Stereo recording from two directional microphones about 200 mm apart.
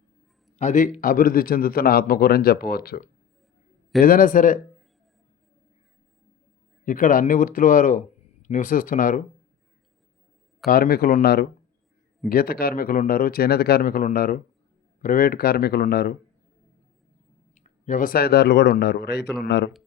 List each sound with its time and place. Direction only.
0.6 s a man's voice: 35° left (ahead or behind)
6.8 s a man's voice: 40° left (ahead or behind)
10.7 s a man's voice: 50° left (ahead or behind)
17.5 s a man's voice: 40° left (ahead or behind); by 19.7 s 60° left (ahead or behind)